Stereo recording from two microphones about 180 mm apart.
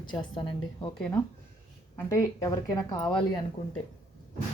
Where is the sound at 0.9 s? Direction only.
5° left (ahead or behind).